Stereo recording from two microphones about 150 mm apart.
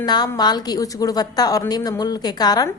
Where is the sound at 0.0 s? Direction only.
25° left (ahead or behind).